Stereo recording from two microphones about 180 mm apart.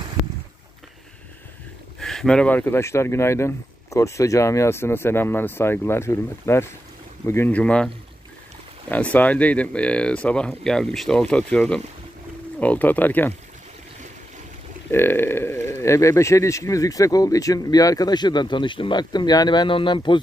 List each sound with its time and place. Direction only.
2.0 s speech: centre (ahead or behind)
14.9 s speech: 10° left (ahead or behind)